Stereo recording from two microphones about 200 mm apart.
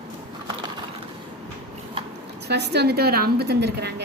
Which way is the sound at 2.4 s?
55° right (ahead or behind).